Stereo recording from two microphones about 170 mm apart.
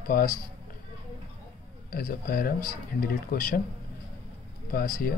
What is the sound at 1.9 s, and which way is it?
Speech, 60° left (ahead or behind).